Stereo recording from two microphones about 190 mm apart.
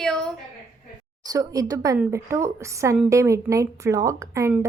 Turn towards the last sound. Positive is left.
turn(degrees=-15)  # may be behind; listen again after turning